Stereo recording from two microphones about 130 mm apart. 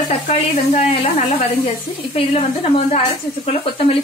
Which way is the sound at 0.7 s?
60° left (ahead or behind).